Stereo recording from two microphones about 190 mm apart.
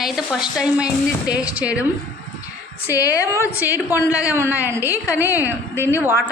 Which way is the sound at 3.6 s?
10° right (ahead or behind).